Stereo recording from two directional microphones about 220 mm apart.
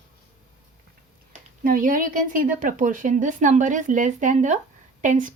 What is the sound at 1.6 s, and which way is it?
A woman's voice, 40° right (ahead or behind).